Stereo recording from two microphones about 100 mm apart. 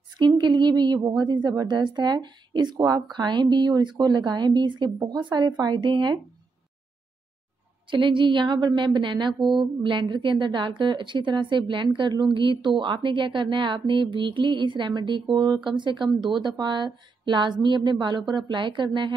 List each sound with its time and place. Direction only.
0.2 s a woman's voice: 50° right (ahead or behind)
7.9 s a woman's voice: 55° right (ahead or behind)